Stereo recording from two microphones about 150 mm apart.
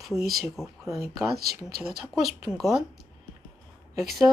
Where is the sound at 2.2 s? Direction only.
Centre (ahead or behind).